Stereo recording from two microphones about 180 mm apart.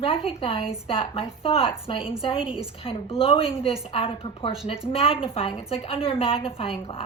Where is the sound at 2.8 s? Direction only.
30° left (ahead or behind).